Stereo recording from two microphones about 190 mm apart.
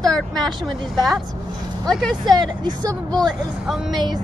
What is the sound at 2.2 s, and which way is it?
Speech, 20° right (ahead or behind).